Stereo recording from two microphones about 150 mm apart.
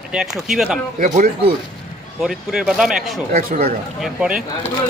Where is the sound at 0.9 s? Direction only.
60° right (ahead or behind).